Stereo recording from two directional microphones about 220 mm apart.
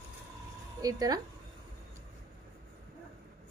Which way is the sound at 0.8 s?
15° right (ahead or behind).